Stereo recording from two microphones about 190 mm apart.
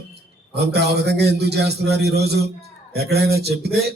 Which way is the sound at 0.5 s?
60° right (ahead or behind).